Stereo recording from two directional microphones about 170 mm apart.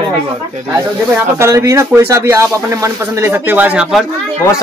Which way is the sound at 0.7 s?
15° right (ahead or behind).